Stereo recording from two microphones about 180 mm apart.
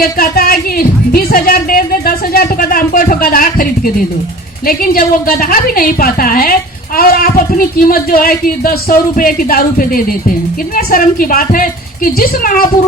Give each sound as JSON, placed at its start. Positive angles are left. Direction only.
{"t": 0.0, "sound": "music", "side_deg": 55}
{"t": 4.6, "sound": "a woman's voice", "side_deg": 55}